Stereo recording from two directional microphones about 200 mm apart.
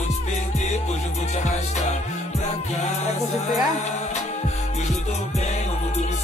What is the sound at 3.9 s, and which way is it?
Music, 35° left (ahead or behind).